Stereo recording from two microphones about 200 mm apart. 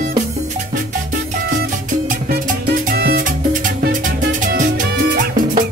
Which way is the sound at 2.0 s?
45° right (ahead or behind).